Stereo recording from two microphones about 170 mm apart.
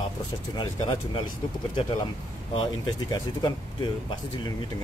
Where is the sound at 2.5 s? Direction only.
25° left (ahead or behind).